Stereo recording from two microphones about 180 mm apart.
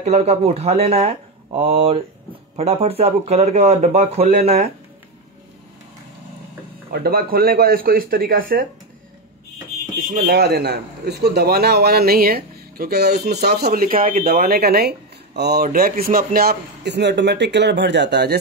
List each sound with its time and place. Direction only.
0.0 s speech: 35° right (ahead or behind)
6.9 s speech: 55° right (ahead or behind)
9.9 s speech: 55° right (ahead or behind)